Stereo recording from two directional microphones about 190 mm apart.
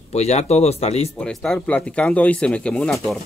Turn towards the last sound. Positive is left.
turn(degrees=5)  # may be behind; listen again after turning